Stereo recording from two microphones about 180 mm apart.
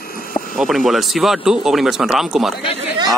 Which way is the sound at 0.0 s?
55° left (ahead or behind).